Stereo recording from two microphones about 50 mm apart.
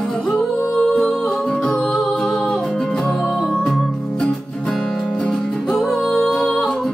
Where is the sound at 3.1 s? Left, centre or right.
Centre.